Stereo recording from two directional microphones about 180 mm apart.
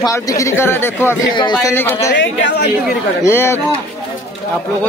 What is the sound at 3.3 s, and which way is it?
Speech, 15° left (ahead or behind).